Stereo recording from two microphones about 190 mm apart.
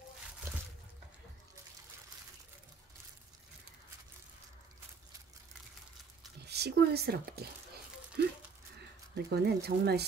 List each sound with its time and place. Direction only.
6.4 s speech: 60° right (ahead or behind)
9.1 s speech: 60° right (ahead or behind)